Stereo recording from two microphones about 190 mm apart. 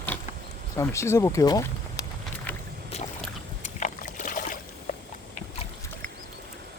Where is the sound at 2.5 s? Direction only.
10° left (ahead or behind).